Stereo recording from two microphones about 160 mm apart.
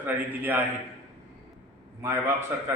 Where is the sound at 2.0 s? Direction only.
15° right (ahead or behind).